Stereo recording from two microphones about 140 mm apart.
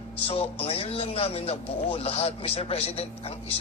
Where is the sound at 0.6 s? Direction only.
45° left (ahead or behind).